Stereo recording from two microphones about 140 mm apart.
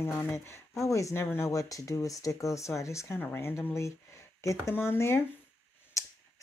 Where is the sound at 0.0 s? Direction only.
15° left (ahead or behind).